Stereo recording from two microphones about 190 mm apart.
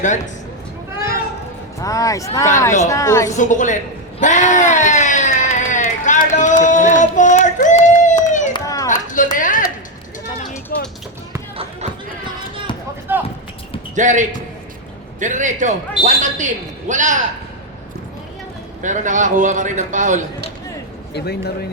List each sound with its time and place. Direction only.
1.8 s speech: 15° left (ahead or behind)
3.3 s a woman's voice: 40° left (ahead or behind)
4.2 s a sound: 40° left (ahead or behind)
8.5 s run: 20° left (ahead or behind)
8.9 s a sound: 45° left (ahead or behind)
10.7 s basketball bounce: 50° left (ahead or behind)
13.1 s a sound: 10° right (ahead or behind)
13.9 s a man's voice: 40° right (ahead or behind)
18.8 s a man's voice: 40° right (ahead or behind)
21.1 s a man's voice: 60° left (ahead or behind)